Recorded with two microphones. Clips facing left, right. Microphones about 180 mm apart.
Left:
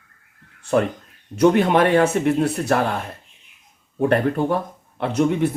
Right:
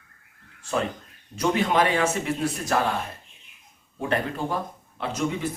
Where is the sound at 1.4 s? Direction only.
60° left (ahead or behind).